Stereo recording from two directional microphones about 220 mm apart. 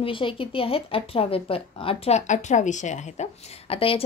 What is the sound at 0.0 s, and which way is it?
Speech, 25° left (ahead or behind).